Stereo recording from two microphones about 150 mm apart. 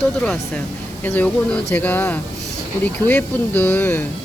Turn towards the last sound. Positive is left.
turn(degrees=15)  # may be behind; listen again after turning